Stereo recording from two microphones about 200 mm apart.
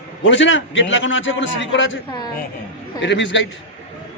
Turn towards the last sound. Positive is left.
turn(degrees=65)  # may be behind; listen again after turning